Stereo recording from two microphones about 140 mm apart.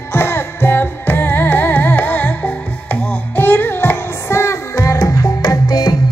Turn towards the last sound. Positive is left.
turn(degrees=30)  # may be behind; listen again after turning